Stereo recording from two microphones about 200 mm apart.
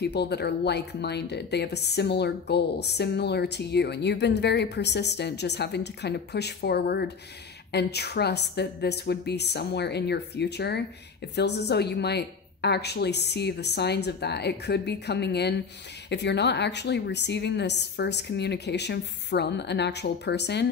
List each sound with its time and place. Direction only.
0.0 s speech: 55° left (ahead or behind)